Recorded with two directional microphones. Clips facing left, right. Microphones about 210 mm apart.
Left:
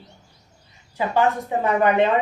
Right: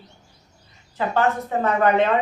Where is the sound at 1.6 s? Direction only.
15° left (ahead or behind).